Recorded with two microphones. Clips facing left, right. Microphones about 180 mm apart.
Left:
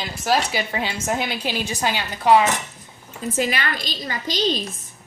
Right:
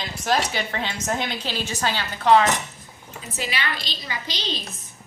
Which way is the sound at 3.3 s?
50° left (ahead or behind).